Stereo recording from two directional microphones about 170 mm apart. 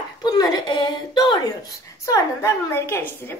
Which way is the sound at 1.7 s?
20° left (ahead or behind).